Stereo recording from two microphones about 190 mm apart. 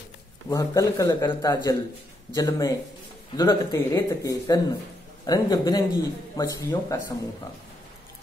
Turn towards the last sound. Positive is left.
turn(degrees=15)  # may be behind; listen again after turning